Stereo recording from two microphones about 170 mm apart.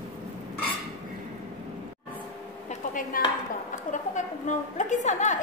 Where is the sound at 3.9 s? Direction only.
45° left (ahead or behind).